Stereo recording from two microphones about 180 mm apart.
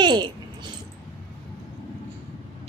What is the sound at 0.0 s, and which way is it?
Dog, 25° right (ahead or behind).